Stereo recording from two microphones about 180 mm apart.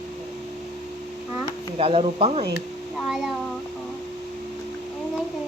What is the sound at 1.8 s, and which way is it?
Speech, 30° right (ahead or behind).